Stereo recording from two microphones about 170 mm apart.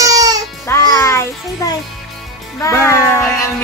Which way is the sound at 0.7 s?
20° left (ahead or behind).